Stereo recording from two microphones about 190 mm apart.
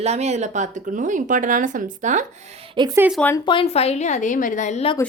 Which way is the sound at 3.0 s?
5° right (ahead or behind).